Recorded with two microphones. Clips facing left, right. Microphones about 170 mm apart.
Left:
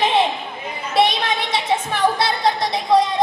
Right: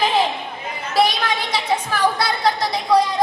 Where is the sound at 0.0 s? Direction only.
25° left (ahead or behind).